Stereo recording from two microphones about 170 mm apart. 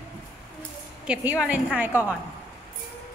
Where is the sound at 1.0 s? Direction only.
10° right (ahead or behind).